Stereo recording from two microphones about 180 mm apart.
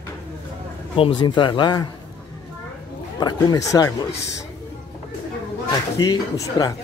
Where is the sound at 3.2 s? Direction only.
20° left (ahead or behind).